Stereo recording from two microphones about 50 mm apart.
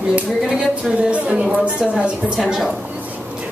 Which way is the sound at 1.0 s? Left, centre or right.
Right.